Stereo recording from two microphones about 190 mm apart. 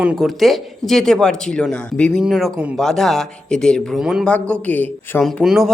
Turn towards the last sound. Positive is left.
turn(degrees=0)  # may be behind; listen again after turning